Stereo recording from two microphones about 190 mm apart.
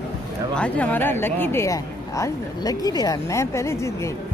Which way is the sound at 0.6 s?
5° left (ahead or behind).